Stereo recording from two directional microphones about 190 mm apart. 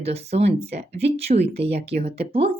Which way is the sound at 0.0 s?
35° right (ahead or behind).